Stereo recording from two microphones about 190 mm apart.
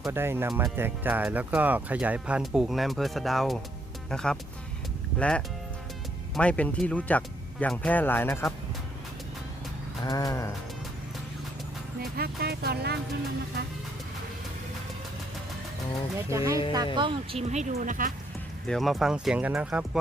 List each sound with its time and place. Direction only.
0.1 s speech: 10° right (ahead or behind); by 4.4 s 5° left (ahead or behind)
6.3 s speech: 5° left (ahead or behind)
10.0 s a sound: 20° left (ahead or behind)
12.1 s speech: 55° right (ahead or behind)
16.1 s speech: 15° right (ahead or behind); by 18.1 s 45° right (ahead or behind)
18.7 s speech: centre (ahead or behind)